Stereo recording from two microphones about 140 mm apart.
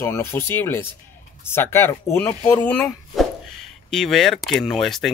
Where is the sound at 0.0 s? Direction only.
20° left (ahead or behind).